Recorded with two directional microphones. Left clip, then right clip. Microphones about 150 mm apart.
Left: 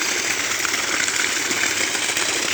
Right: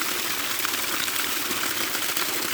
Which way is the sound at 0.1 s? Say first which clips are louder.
Left 6 dB; 45° right (ahead or behind).